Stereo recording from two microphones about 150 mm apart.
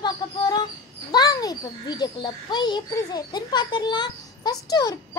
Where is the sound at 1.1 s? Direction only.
25° left (ahead or behind).